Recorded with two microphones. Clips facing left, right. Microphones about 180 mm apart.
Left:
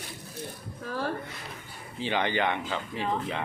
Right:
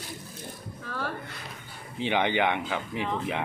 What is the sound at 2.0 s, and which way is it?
Speech, 15° right (ahead or behind).